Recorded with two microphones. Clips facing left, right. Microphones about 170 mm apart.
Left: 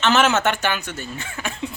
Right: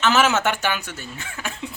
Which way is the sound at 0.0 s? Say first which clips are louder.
Left 1 dB; 5° right (ahead or behind).